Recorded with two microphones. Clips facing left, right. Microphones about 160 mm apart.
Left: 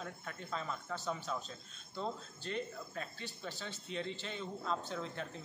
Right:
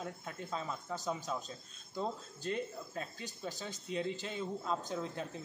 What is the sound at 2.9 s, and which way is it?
Speech, 15° right (ahead or behind).